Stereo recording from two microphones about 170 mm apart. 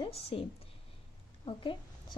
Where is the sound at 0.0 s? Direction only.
30° left (ahead or behind).